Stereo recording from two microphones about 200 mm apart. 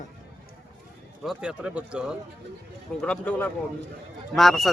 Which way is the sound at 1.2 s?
5° right (ahead or behind).